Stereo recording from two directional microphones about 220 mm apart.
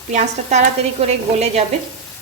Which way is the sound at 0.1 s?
30° right (ahead or behind).